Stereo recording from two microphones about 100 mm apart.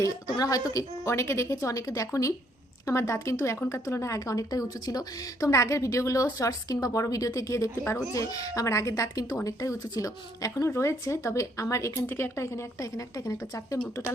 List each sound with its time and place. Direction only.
0.0 s a woman's voice: 35° left (ahead or behind)